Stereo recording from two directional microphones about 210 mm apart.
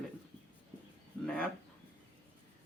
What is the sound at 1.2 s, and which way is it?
Speech, 5° left (ahead or behind).